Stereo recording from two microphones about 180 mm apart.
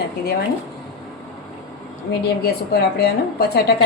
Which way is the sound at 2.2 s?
65° left (ahead or behind).